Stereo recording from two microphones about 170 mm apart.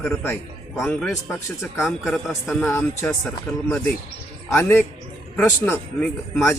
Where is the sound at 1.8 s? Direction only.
Centre (ahead or behind).